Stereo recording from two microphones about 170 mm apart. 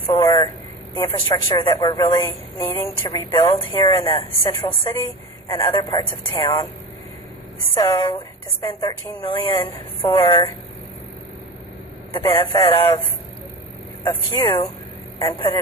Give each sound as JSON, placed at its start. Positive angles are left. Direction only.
{"t": 0.1, "sound": "a woman's voice", "side_deg": 25}
{"t": 7.8, "sound": "a woman's voice", "side_deg": 25}
{"t": 12.2, "sound": "a woman's voice", "side_deg": 20}
{"t": 14.0, "sound": "a woman's voice", "side_deg": 25}